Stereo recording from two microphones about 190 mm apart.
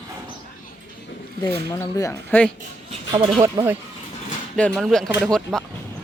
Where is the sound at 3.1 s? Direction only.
25° right (ahead or behind).